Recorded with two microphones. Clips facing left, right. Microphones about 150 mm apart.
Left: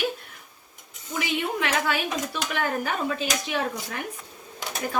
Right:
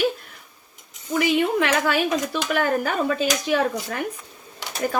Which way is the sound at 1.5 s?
50° right (ahead or behind).